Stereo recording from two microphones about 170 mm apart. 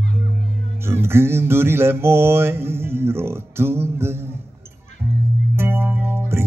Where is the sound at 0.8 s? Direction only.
15° right (ahead or behind).